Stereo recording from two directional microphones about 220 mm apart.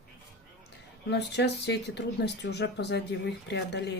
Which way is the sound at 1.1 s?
50° left (ahead or behind).